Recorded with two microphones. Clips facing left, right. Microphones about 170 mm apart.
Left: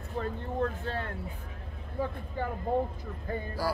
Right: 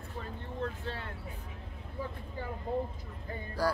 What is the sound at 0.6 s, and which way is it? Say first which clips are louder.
Speech: left 5 dB; 50° left (ahead or behind).